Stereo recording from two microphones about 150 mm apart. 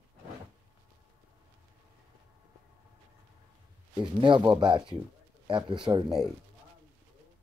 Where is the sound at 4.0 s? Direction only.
30° right (ahead or behind).